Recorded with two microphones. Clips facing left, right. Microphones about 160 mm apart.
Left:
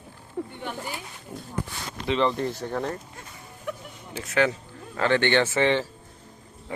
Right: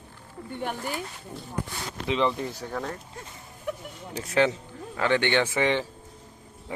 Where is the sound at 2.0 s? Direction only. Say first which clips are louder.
Left 2 dB; 10° right (ahead or behind).